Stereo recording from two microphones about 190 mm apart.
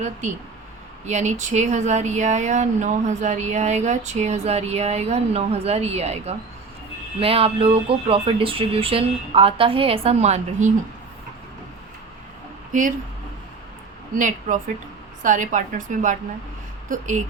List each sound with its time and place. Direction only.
0.0 s speech: 40° right (ahead or behind)
14.2 s speech: 40° right (ahead or behind)